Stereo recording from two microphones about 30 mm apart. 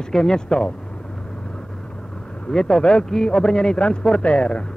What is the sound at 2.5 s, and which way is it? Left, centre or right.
A man's voice, left.